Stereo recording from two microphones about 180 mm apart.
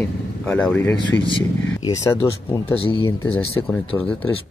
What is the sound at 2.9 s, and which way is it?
Speech, 25° left (ahead or behind).